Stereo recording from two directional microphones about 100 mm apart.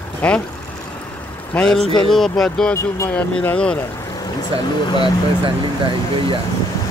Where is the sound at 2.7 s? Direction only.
25° left (ahead or behind).